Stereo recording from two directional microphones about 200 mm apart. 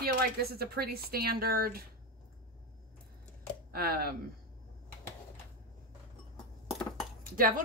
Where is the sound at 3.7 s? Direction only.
50° right (ahead or behind).